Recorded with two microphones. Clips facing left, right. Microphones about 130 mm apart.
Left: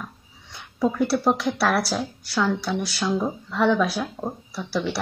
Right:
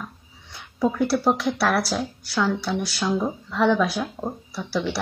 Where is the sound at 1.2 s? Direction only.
Centre (ahead or behind).